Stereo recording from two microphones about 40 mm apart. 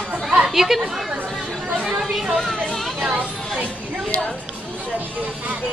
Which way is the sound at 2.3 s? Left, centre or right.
Centre.